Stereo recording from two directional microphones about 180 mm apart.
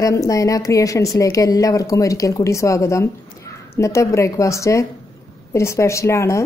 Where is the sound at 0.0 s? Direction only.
20° left (ahead or behind).